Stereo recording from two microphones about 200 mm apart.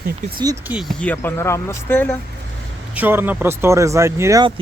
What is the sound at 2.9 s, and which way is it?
Speech, 10° right (ahead or behind).